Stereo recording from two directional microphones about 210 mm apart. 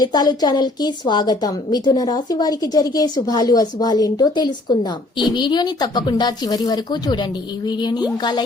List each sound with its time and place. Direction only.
0.0 s a woman's voice: 20° left (ahead or behind)